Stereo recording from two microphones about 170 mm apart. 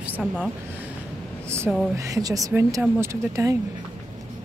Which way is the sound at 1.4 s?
15° right (ahead or behind).